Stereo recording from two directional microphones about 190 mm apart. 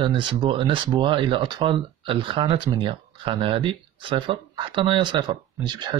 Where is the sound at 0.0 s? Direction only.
25° right (ahead or behind).